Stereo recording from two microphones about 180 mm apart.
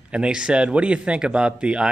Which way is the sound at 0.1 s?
5° right (ahead or behind).